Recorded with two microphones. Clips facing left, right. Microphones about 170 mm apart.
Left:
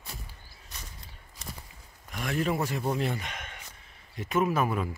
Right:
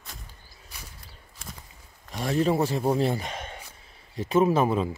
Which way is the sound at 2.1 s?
30° right (ahead or behind).